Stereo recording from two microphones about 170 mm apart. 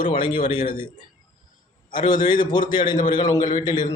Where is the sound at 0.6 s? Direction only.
60° left (ahead or behind).